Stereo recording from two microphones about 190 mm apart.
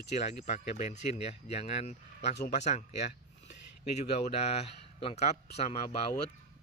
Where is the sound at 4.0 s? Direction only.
35° left (ahead or behind).